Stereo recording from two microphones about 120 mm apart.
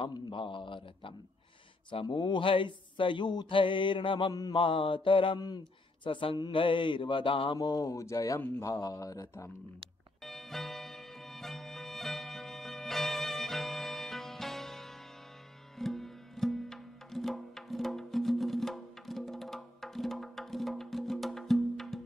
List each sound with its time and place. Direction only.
0.0 s speech: 40° left (ahead or behind)
7.5 s speech: 30° left (ahead or behind)
10.2 s music: centre (ahead or behind)